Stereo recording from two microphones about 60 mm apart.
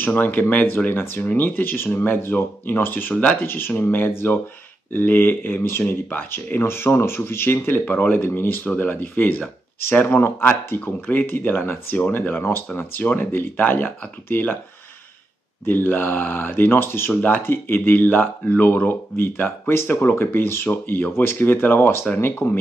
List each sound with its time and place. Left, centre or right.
0.0 s speech: left
8.6 s speech: left
11.1 s speech: left
13.0 s speech: left
15.6 s speech: left
17.1 s speech: left
19.7 s speech: left
20.0 s speech: left